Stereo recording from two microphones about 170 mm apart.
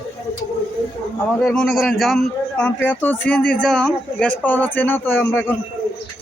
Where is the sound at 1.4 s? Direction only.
5° left (ahead or behind).